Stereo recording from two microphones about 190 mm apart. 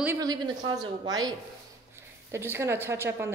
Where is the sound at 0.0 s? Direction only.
15° right (ahead or behind).